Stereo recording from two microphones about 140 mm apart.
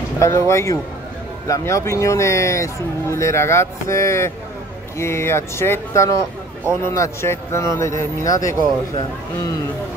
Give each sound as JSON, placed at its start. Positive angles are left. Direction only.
{"t": 0.2, "sound": "speech", "side_deg": 20}